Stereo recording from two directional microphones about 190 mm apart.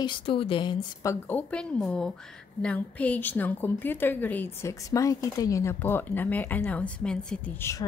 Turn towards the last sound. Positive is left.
turn(degrees=10)  # may be behind; listen again after turning